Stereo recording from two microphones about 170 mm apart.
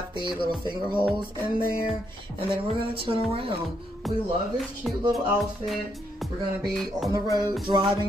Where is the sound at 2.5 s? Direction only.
30° right (ahead or behind).